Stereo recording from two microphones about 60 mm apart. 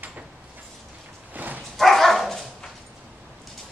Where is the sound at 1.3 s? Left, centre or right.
Right.